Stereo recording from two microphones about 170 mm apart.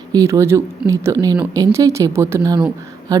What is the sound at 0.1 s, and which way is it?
Speech, 20° right (ahead or behind).